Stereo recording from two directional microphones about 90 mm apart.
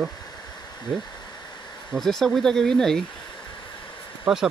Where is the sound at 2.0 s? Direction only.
5° left (ahead or behind).